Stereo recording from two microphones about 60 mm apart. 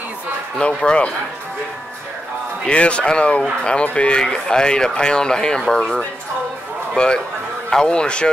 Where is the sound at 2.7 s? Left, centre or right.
Centre.